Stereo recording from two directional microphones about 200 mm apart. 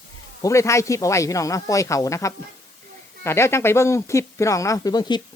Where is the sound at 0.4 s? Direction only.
15° left (ahead or behind).